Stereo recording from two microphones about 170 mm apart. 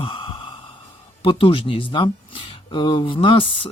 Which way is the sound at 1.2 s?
30° left (ahead or behind).